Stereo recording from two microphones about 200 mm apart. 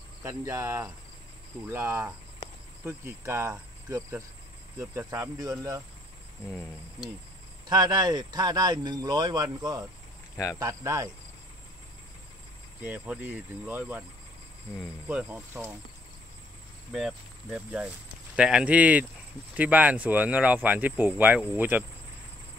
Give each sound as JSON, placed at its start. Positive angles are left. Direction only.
{"t": 0.2, "sound": "speech", "side_deg": -15}
{"t": 7.6, "sound": "speech", "side_deg": -20}
{"t": 10.3, "sound": "speech", "side_deg": 15}
{"t": 10.6, "sound": "speech", "side_deg": -15}
{"t": 12.8, "sound": "speech", "side_deg": -5}
{"t": 15.0, "sound": "speech", "side_deg": -5}
{"t": 16.9, "sound": "speech", "side_deg": -5}